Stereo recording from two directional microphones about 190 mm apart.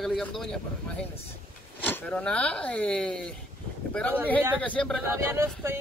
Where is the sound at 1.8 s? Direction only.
10° left (ahead or behind).